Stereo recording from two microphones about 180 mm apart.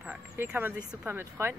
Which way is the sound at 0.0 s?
5° right (ahead or behind).